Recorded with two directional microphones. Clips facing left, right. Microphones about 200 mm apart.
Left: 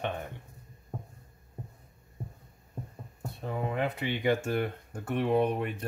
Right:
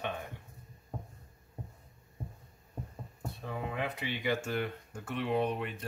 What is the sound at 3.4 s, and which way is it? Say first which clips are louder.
Speech: left 5 dB; 40° left (ahead or behind).